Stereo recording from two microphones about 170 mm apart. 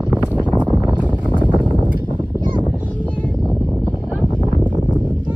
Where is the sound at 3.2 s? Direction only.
Centre (ahead or behind).